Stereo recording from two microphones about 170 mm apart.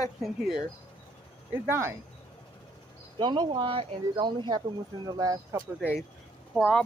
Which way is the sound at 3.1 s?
25° right (ahead or behind).